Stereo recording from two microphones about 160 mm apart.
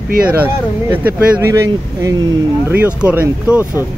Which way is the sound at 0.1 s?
65° right (ahead or behind).